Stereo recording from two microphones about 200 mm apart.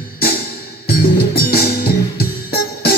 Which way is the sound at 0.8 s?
50° left (ahead or behind).